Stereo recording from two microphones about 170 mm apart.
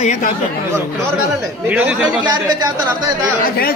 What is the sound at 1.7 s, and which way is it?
Speech, 5° right (ahead or behind).